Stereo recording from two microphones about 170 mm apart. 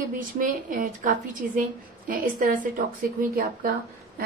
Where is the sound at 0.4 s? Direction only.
50° right (ahead or behind).